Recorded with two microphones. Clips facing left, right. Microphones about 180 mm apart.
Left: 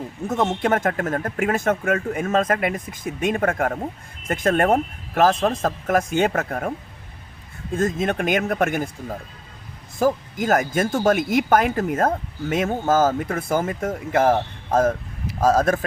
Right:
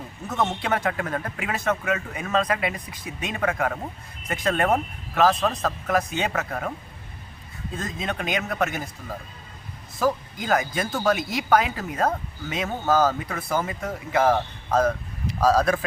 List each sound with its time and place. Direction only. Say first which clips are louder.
0.6 s speech: left 5 dB; 45° left (ahead or behind)
7.7 s speech: left 9 dB; 50° left (ahead or behind)
10.0 s speech: left 4 dB; 45° left (ahead or behind)